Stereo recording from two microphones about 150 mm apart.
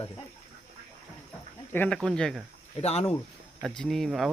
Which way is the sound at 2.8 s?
45° left (ahead or behind).